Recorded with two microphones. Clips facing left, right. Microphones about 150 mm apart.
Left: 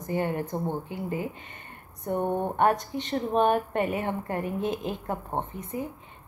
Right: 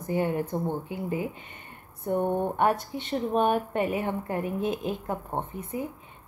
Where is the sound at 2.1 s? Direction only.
15° left (ahead or behind).